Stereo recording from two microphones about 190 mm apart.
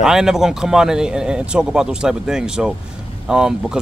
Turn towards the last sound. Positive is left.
turn(degrees=-5)  # may be behind; listen again after turning